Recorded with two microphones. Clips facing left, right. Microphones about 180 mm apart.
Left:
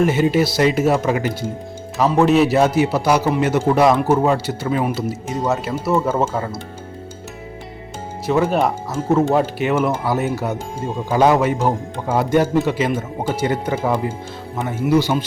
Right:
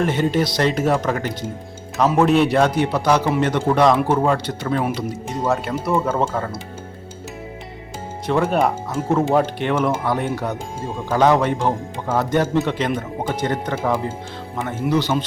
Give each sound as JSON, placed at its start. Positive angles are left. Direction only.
{"t": 0.0, "sound": "speech", "side_deg": 5}
{"t": 8.3, "sound": "speech", "side_deg": 0}